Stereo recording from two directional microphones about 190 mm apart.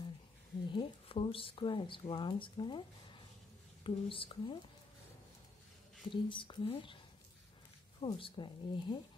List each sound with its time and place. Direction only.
0.7 s speech: 30° left (ahead or behind)
6.0 s speech: 25° left (ahead or behind)
8.0 s speech: 25° left (ahead or behind)